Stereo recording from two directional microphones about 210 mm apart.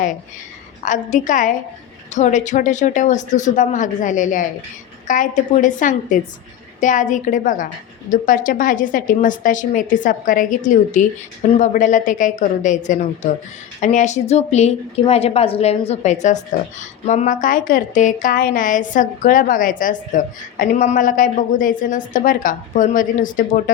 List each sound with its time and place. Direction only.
0.8 s a woman's voice: 35° left (ahead or behind)